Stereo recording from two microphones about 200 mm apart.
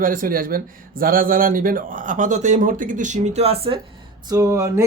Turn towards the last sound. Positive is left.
turn(degrees=-15)  # may be behind; listen again after turning